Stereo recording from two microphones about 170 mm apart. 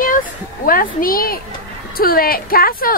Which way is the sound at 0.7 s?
55° left (ahead or behind).